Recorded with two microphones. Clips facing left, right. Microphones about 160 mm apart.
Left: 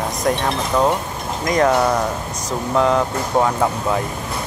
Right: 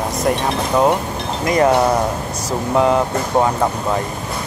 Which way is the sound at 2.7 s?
5° right (ahead or behind).